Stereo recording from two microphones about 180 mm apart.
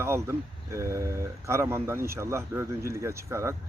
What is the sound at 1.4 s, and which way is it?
Speech, 15° right (ahead or behind).